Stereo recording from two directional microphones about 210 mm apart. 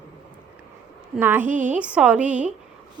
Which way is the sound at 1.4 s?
35° right (ahead or behind).